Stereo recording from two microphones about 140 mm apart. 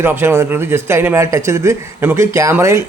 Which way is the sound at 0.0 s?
15° right (ahead or behind).